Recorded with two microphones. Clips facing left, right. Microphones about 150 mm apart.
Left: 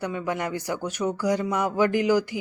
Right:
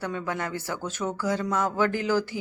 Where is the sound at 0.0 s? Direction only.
15° left (ahead or behind).